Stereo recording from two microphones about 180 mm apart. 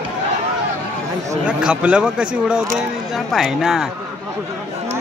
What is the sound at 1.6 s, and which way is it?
Speech, 5° right (ahead or behind).